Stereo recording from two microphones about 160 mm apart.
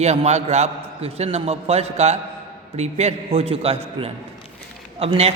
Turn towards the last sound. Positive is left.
turn(degrees=-40)  # may be behind; listen again after turning